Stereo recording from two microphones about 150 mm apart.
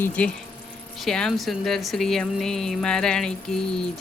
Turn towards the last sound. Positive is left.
turn(degrees=5)  # may be behind; listen again after turning